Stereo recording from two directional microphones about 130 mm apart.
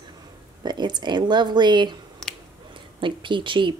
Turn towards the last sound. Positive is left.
turn(degrees=-40)  # may be behind; listen again after turning